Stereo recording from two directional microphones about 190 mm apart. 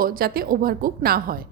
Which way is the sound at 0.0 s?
50° right (ahead or behind).